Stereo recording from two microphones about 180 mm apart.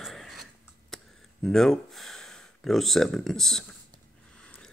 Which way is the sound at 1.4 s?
Centre (ahead or behind).